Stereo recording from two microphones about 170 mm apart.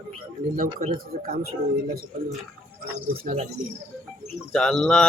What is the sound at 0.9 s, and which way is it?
Speech, 60° right (ahead or behind).